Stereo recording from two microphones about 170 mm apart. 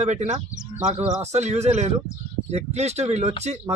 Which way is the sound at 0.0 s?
40° right (ahead or behind).